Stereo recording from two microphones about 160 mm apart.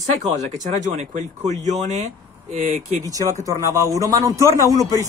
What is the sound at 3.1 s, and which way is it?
A man's voice, 20° right (ahead or behind).